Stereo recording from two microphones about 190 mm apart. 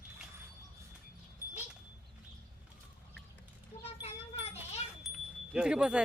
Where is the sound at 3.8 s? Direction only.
30° left (ahead or behind).